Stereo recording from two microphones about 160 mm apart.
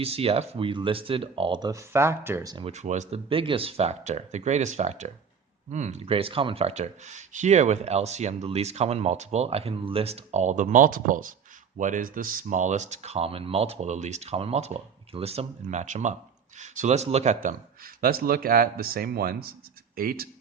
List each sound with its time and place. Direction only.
0.0 s speech: 40° right (ahead or behind)
2.6 s speech: 45° right (ahead or behind)
17.8 s speech: 65° right (ahead or behind)